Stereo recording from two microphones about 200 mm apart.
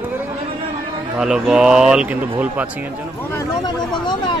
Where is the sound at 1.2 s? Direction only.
5° right (ahead or behind).